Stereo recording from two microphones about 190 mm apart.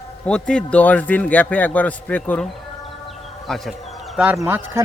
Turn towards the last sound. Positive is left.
turn(degrees=-10)  # may be behind; listen again after turning